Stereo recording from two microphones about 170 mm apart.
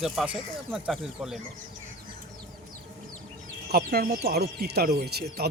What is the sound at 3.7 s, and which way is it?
Speech, 65° right (ahead or behind).